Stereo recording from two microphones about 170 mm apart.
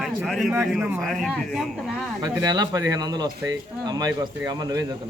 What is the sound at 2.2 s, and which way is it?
Speech, 20° right (ahead or behind).